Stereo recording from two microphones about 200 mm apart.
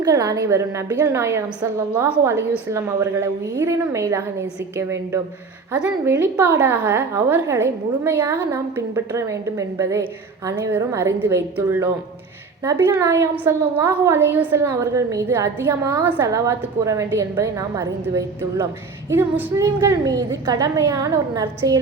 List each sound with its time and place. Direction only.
0.0 s a woman's voice: 15° right (ahead or behind)
5.8 s a woman's voice: 10° right (ahead or behind)